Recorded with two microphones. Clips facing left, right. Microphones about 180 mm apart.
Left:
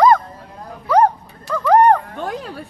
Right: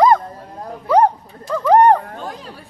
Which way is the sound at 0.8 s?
20° right (ahead or behind).